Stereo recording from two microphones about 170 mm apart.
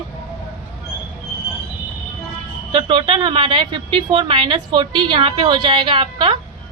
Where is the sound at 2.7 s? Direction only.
30° right (ahead or behind).